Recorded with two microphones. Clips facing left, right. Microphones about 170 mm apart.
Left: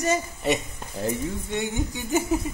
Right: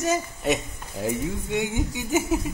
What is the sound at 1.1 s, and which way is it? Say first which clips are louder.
Speech: right 3 dB; 15° right (ahead or behind).